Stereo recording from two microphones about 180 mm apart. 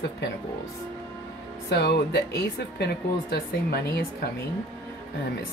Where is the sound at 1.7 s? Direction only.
60° left (ahead or behind).